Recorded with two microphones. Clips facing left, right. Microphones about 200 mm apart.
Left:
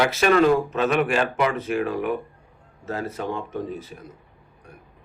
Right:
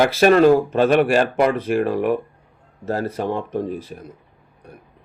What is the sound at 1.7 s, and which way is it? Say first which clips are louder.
Speech: right 5 dB; 50° right (ahead or behind).